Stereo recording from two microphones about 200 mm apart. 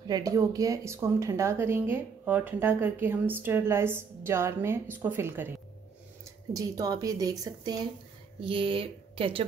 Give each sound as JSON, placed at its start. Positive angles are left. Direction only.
{"t": 0.0, "sound": "speech", "side_deg": -20}
{"t": 6.5, "sound": "speech", "side_deg": -15}